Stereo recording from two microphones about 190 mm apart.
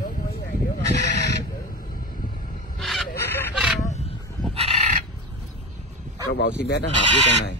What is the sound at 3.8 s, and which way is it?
Wild animals, 35° left (ahead or behind).